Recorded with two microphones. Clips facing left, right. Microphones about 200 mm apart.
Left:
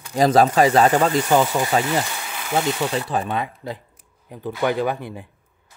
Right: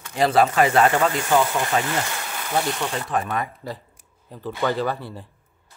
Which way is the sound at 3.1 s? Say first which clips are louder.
Left 1 dB; 30° left (ahead or behind).